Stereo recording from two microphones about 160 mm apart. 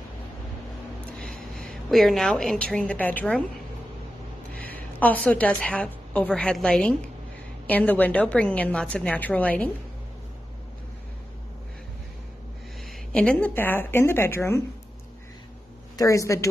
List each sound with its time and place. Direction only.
1.2 s a woman's voice: 5° left (ahead or behind)
4.6 s a woman's voice: 10° left (ahead or behind)
13.1 s a woman's voice: 5° left (ahead or behind)
16.0 s speech: 20° left (ahead or behind)